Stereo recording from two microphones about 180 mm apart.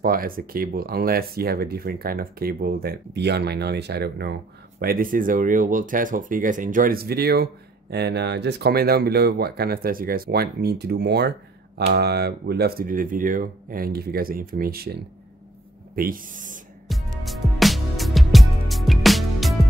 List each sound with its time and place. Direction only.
0.0 s speech: 55° right (ahead or behind)
16.9 s music: centre (ahead or behind)